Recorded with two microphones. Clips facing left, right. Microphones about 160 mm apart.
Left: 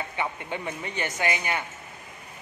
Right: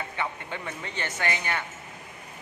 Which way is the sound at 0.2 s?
15° left (ahead or behind).